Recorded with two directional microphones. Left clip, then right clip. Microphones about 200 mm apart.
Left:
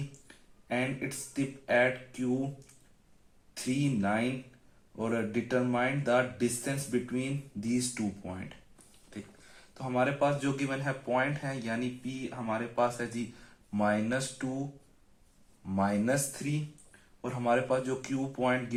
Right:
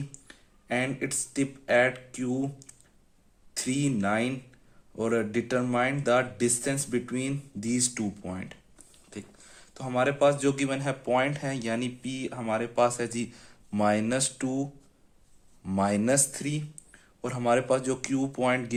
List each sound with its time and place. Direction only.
0.3 s speech: 45° right (ahead or behind)
3.5 s speech: 40° right (ahead or behind)